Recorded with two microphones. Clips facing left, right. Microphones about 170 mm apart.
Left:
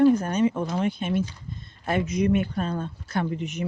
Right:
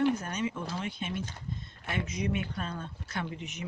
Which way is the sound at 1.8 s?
60° left (ahead or behind).